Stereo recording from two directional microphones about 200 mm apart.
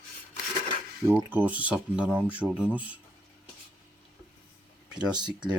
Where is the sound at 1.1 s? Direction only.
10° right (ahead or behind).